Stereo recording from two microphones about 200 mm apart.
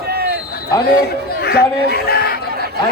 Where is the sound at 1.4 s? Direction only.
50° left (ahead or behind).